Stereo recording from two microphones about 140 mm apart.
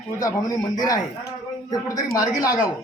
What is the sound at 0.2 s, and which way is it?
A man's voice, 25° left (ahead or behind).